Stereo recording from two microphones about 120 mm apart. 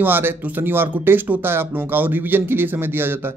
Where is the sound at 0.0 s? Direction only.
15° right (ahead or behind).